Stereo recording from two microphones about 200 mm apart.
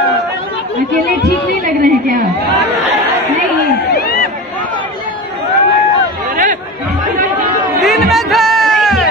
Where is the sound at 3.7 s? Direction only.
50° left (ahead or behind).